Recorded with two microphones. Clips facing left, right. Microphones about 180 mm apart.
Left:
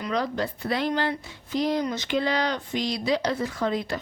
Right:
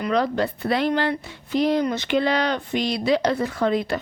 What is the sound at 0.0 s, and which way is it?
Speech, 65° right (ahead or behind).